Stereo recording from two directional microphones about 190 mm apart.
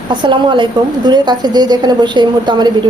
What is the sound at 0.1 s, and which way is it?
A woman's voice, 25° right (ahead or behind).